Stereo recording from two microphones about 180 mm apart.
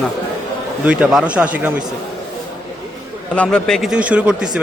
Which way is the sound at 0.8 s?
5° right (ahead or behind).